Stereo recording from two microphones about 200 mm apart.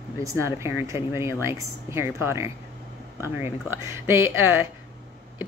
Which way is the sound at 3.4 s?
10° right (ahead or behind).